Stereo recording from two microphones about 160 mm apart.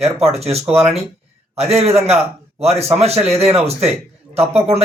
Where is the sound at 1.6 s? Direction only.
40° right (ahead or behind).